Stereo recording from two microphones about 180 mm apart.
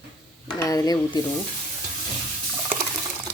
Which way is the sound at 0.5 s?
20° left (ahead or behind).